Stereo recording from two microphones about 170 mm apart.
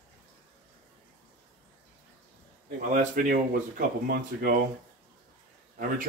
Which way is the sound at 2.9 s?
50° right (ahead or behind).